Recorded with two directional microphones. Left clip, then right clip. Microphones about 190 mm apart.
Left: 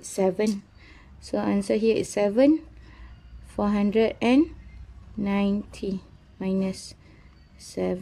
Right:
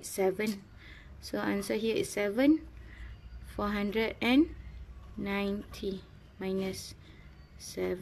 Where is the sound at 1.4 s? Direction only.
25° left (ahead or behind).